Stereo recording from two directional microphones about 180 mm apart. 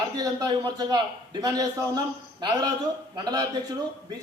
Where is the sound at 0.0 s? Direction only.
20° right (ahead or behind).